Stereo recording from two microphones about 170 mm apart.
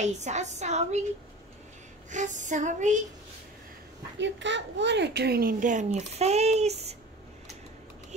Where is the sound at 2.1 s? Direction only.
45° right (ahead or behind).